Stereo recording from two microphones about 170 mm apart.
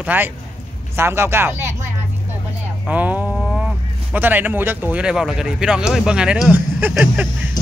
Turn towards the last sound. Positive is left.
turn(degrees=-10)  # may be behind; listen again after turning